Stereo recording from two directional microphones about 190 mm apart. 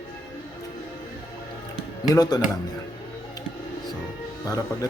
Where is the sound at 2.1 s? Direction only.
20° left (ahead or behind).